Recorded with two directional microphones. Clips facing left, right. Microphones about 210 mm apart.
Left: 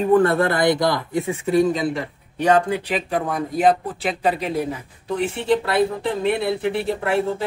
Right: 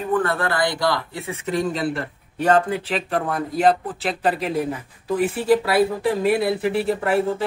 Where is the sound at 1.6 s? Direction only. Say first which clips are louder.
Left 3 dB; centre (ahead or behind).